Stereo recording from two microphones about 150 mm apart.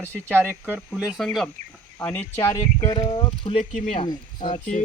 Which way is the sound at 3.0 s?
35° left (ahead or behind).